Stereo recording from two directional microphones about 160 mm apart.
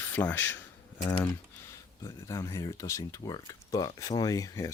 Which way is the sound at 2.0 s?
20° left (ahead or behind).